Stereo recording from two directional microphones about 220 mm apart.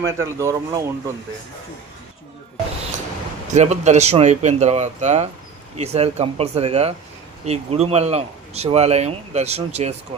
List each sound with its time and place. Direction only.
0.2 s speech: 15° right (ahead or behind)
3.5 s speech: 30° right (ahead or behind)